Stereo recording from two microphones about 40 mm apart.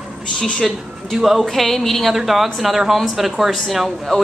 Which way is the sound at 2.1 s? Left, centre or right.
Centre.